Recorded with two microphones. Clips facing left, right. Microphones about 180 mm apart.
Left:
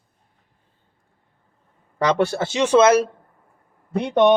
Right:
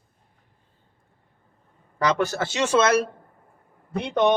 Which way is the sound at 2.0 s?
30° left (ahead or behind).